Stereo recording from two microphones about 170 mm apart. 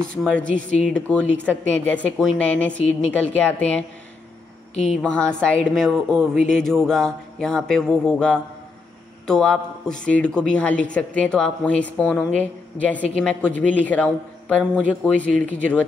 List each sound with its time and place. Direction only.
0.1 s a woman's voice: 5° left (ahead or behind)
0.5 s speech: 50° right (ahead or behind)
0.7 s a woman's voice: 5° left (ahead or behind)
5.0 s a woman's voice: 5° left (ahead or behind)